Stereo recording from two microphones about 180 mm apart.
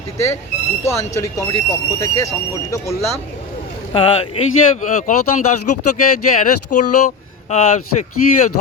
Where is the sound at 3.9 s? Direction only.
30° left (ahead or behind).